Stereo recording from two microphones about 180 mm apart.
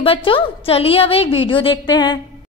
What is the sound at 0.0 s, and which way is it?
A woman's voice, 30° left (ahead or behind).